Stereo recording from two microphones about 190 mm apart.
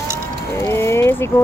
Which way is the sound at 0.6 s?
15° left (ahead or behind).